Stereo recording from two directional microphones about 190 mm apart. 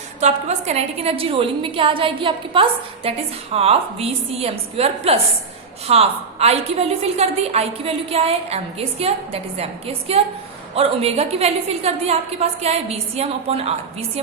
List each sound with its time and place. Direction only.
0.2 s a woman's voice: 35° right (ahead or behind)